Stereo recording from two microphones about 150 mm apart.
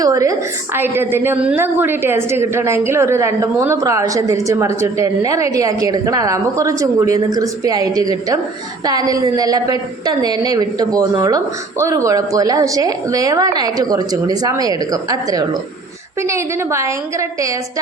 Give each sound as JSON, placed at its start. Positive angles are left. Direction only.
{"t": 0.0, "sound": "a woman's voice", "side_deg": -25}